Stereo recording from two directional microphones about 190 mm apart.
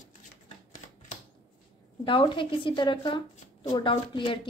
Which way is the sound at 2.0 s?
25° left (ahead or behind).